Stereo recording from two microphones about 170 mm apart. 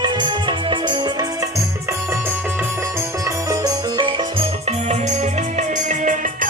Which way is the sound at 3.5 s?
25° right (ahead or behind).